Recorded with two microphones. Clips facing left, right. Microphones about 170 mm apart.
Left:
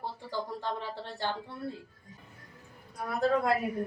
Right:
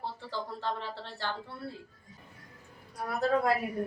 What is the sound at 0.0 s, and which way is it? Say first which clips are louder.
Speech: left 1 dB; 15° left (ahead or behind).